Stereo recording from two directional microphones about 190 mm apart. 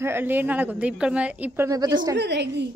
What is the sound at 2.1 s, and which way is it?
Speech, 60° right (ahead or behind).